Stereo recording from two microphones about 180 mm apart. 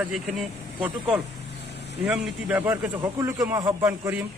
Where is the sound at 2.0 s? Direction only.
5° right (ahead or behind).